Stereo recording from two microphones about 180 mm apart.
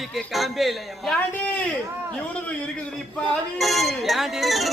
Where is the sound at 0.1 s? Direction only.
Centre (ahead or behind).